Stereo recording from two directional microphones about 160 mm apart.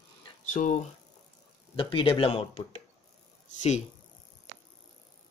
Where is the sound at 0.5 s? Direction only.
50° left (ahead or behind).